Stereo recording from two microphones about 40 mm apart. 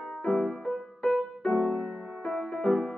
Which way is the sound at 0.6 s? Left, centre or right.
Centre.